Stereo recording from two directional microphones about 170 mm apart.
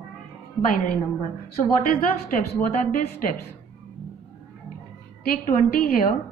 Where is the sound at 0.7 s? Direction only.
55° left (ahead or behind).